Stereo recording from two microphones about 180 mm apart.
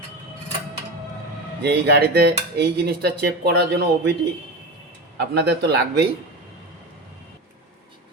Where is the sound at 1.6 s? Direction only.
65° right (ahead or behind).